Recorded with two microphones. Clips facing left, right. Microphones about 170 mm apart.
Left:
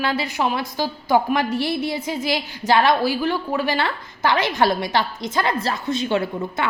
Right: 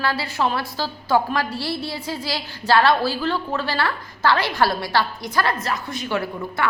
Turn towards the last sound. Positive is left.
turn(degrees=25)  # may be behind; listen again after turning